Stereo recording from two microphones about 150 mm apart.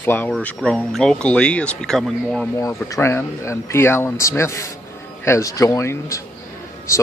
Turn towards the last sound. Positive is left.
turn(degrees=20)  # may be behind; listen again after turning